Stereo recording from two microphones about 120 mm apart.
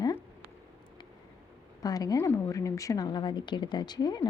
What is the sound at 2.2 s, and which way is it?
Speech, 20° left (ahead or behind).